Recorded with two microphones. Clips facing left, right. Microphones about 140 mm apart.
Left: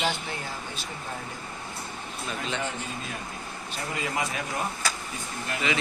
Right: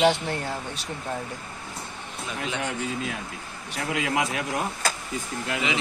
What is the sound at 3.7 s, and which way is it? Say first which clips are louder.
Speech: right 5 dB; 85° right.